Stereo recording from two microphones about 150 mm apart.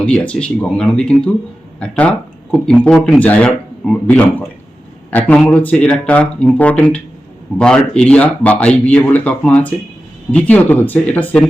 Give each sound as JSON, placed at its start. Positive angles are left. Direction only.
{"t": 0.0, "sound": "speech", "side_deg": 5}